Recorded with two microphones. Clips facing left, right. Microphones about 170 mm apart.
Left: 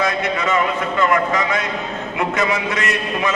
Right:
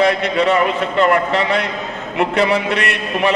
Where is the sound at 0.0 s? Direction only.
65° right (ahead or behind).